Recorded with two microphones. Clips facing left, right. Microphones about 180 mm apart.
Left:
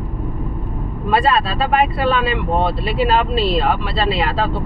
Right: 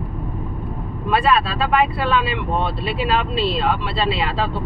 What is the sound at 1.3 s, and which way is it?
Speech, 40° left (ahead or behind).